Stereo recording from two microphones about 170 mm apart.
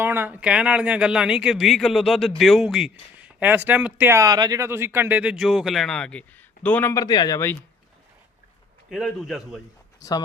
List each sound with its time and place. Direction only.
0.0 s speech: 10° right (ahead or behind); by 6.9 s 10° left (ahead or behind)
6.9 s speech: 20° left (ahead or behind)
8.9 s speech: centre (ahead or behind)
10.0 s speech: 20° left (ahead or behind)